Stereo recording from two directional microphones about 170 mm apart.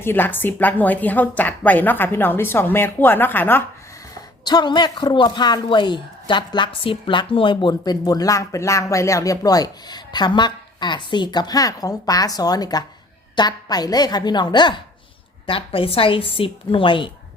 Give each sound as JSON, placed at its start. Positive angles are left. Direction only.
{"t": 0.0, "sound": "a woman's voice", "side_deg": 10}
{"t": 4.4, "sound": "a woman's voice", "side_deg": 25}